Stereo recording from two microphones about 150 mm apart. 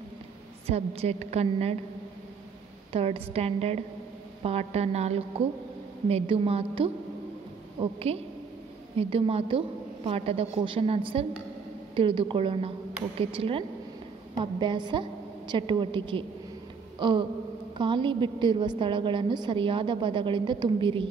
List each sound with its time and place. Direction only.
0.7 s a woman's voice: 45° right (ahead or behind)
2.9 s a woman's voice: 40° right (ahead or behind)